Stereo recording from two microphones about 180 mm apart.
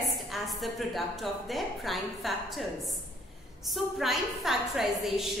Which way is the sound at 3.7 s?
Centre (ahead or behind).